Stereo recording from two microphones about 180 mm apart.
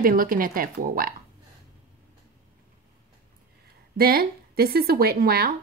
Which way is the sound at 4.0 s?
55° right (ahead or behind).